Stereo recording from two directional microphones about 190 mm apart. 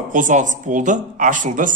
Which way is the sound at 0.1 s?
40° right (ahead or behind).